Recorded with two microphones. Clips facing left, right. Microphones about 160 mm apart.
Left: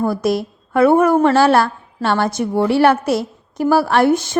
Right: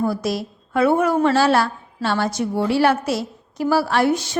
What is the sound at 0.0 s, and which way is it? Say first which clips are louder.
A woman's voice: left 4 dB; 55° left (ahead or behind).